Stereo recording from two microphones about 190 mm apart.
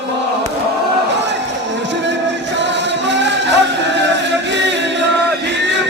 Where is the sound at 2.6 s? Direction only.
70° right (ahead or behind).